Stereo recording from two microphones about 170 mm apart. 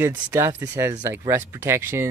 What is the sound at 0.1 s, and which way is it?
Speech, 15° right (ahead or behind).